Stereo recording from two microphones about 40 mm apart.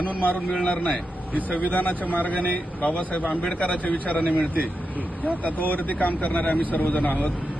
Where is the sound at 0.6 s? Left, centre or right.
Left.